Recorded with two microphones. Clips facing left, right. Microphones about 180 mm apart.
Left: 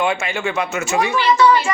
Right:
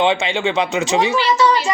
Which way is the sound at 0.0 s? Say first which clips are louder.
Right 3 dB; 25° right (ahead or behind).